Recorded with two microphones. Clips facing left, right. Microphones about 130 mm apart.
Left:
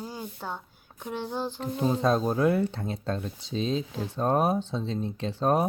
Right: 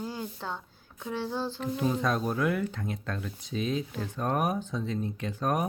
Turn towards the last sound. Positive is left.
turn(degrees=30)  # may be behind; listen again after turning